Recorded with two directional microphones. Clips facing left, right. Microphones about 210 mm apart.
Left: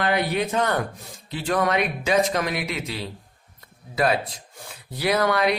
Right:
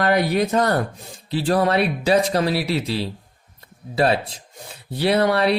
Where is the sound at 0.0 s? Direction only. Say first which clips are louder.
Right 4 dB; 40° right (ahead or behind).